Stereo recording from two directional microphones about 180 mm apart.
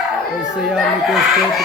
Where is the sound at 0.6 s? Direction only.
Centre (ahead or behind).